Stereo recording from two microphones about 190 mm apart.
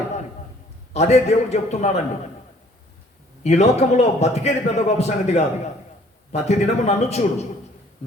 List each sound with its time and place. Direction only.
0.9 s a man's voice: 35° left (ahead or behind)
3.4 s a man's voice: 35° left (ahead or behind)